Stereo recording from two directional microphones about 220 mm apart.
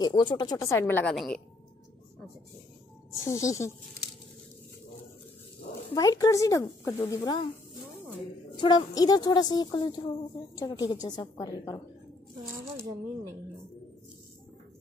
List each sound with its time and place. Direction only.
0.0 s speech: 20° left (ahead or behind); by 1.4 s 5° left (ahead or behind)
3.3 s speech: 15° left (ahead or behind)
5.9 s speech: 15° left (ahead or behind)
8.5 s a woman's voice: 20° left (ahead or behind)
12.7 s speech: 10° right (ahead or behind)